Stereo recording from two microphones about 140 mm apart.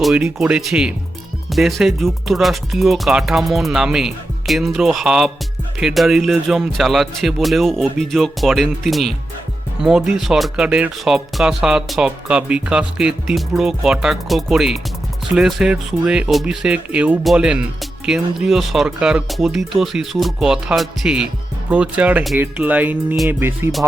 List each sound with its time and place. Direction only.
0.0 s speech: 5° right (ahead or behind)